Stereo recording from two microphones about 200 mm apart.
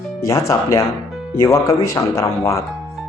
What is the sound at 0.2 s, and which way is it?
Speech, 15° left (ahead or behind).